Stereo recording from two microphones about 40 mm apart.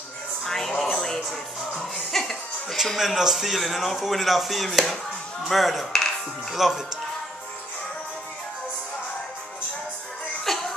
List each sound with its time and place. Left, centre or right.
0.5 s speech: centre
0.9 s music: centre
3.2 s speech: centre
10.4 s music: centre